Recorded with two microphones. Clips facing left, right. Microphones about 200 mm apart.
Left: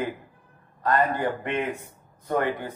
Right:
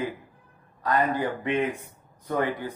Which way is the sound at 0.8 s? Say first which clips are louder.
Left 1 dB; 55° left (ahead or behind).